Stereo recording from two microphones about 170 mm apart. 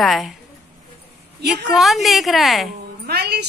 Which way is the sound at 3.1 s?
75° right (ahead or behind).